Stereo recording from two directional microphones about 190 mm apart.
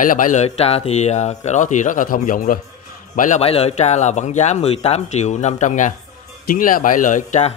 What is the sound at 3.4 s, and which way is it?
A man's voice, 30° left (ahead or behind).